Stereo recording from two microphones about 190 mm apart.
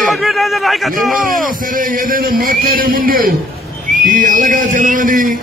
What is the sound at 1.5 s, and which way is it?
A man's voice, 45° right (ahead or behind).